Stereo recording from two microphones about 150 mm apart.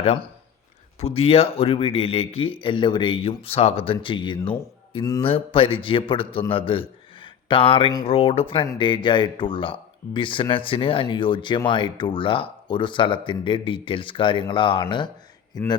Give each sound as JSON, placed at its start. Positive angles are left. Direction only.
{"t": 0.9, "sound": "speech", "side_deg": 40}